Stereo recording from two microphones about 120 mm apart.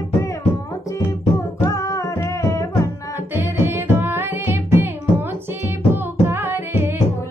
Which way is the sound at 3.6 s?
20° right (ahead or behind).